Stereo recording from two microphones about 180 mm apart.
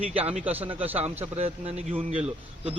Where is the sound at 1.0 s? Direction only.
35° right (ahead or behind).